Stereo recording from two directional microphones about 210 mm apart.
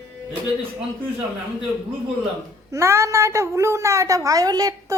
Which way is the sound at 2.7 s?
15° right (ahead or behind).